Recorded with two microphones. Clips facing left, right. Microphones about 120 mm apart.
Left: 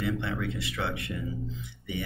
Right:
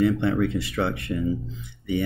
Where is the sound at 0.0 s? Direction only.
45° right (ahead or behind).